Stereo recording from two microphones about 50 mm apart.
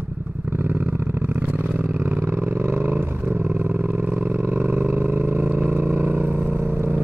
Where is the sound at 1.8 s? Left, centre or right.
Right.